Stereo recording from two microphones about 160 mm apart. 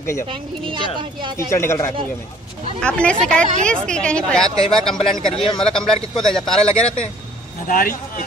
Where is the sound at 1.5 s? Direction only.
15° left (ahead or behind).